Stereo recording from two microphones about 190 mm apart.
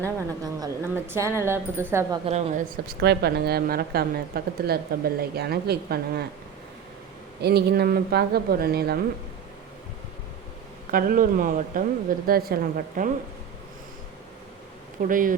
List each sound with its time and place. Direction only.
0.0 s a woman's voice: 20° right (ahead or behind)
2.2 s a woman's voice: 40° right (ahead or behind); by 6.2 s 55° right (ahead or behind)
7.4 s a woman's voice: 55° right (ahead or behind)
10.9 s speech: 50° right (ahead or behind)
15.0 s speech: 45° right (ahead or behind)